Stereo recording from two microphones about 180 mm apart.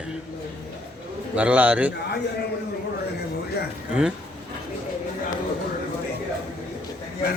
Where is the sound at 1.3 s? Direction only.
10° right (ahead or behind).